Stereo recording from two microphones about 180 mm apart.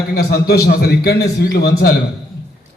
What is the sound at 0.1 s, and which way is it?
A man's voice, 60° left (ahead or behind).